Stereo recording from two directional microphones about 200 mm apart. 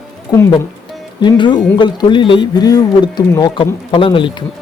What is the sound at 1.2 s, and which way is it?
A man's voice, 20° left (ahead or behind).